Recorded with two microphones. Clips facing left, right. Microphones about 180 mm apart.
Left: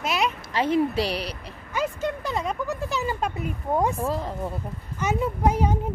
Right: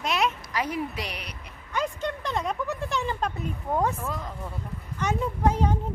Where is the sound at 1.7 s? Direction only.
5° left (ahead or behind).